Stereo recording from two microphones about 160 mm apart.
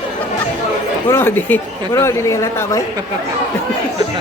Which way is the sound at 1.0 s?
15° left (ahead or behind).